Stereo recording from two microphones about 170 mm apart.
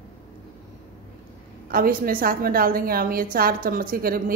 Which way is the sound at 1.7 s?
55° right (ahead or behind).